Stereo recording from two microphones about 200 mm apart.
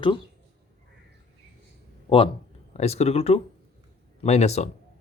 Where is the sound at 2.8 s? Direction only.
35° left (ahead or behind).